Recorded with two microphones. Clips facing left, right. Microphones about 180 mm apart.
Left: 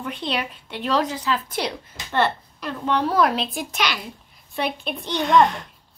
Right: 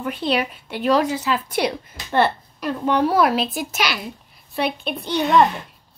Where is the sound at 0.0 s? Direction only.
5° right (ahead or behind).